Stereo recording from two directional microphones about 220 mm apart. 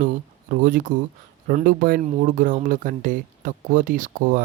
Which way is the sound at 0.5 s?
40° right (ahead or behind).